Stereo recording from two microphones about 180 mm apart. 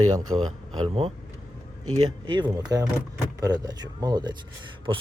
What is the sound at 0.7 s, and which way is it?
Speech, 30° right (ahead or behind).